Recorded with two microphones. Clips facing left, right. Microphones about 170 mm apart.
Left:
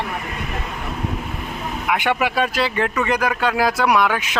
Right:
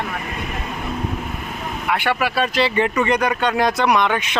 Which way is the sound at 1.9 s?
15° left (ahead or behind).